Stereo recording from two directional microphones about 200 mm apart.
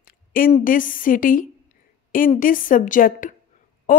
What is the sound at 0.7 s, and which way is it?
A woman's voice, 45° left (ahead or behind).